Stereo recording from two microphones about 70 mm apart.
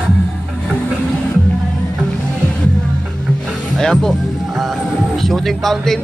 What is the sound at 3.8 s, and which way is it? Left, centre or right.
Music, centre.